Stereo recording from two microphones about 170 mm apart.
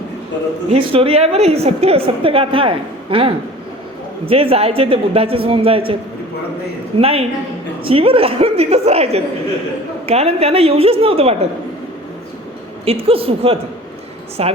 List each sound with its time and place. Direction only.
0.7 s a woman's voice: 35° right (ahead or behind)
7.0 s a woman's voice: 35° right (ahead or behind)
12.8 s a woman's voice: 35° right (ahead or behind)